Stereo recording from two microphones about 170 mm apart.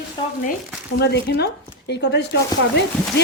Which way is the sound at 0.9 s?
70° left (ahead or behind).